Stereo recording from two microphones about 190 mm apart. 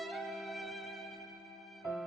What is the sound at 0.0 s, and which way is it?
Music, centre (ahead or behind).